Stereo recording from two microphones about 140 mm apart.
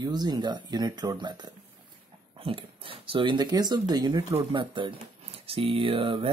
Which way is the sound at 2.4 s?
40° right (ahead or behind).